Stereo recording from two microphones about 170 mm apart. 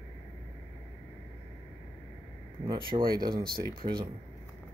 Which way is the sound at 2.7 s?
30° right (ahead or behind).